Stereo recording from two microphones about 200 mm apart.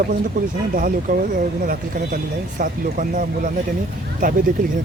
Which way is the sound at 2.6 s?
40° right (ahead or behind).